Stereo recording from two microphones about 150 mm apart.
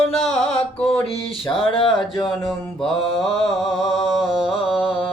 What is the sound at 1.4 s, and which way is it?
Speech, 35° left (ahead or behind).